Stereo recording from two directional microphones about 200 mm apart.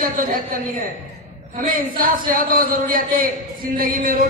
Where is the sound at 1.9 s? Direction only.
45° right (ahead or behind).